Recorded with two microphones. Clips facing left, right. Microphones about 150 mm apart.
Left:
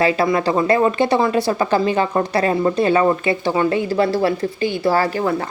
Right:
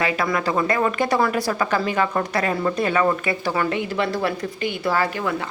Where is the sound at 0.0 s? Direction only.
30° left (ahead or behind).